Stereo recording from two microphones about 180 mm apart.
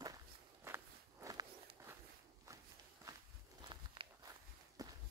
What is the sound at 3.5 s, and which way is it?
Walk, 25° right (ahead or behind).